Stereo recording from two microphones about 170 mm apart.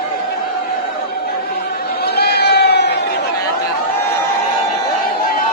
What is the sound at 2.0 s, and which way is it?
Sheep, 70° left (ahead or behind).